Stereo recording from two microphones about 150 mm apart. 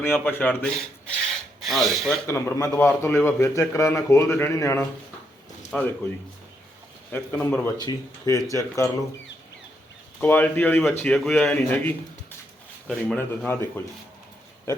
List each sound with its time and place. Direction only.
0.0 s a man's voice: 15° left (ahead or behind)
2.2 s a man's voice: 20° left (ahead or behind)
7.1 s a man's voice: 10° left (ahead or behind)
7.8 s speech: 30° left (ahead or behind)
10.2 s a man's voice: 10° left (ahead or behind)